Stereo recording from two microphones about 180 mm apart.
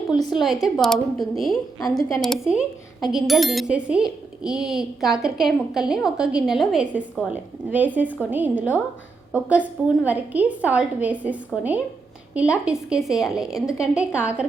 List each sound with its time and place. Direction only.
0.1 s a woman's voice: 25° left (ahead or behind)
0.3 s speech: centre (ahead or behind)
1.8 s a woman's voice: 20° left (ahead or behind)
2.2 s a woman's voice: centre (ahead or behind)